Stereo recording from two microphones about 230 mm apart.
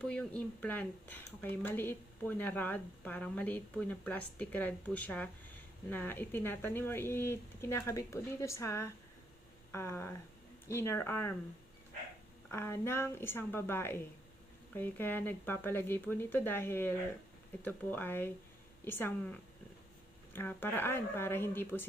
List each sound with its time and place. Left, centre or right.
0.0 s speech: centre
12.5 s speech: centre